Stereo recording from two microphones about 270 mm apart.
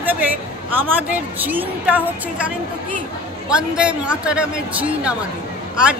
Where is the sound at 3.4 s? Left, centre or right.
Centre.